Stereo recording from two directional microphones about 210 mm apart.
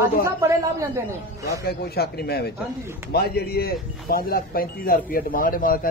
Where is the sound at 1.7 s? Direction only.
50° left (ahead or behind).